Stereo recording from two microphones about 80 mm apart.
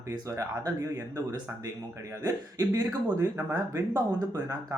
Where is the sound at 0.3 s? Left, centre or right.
Right.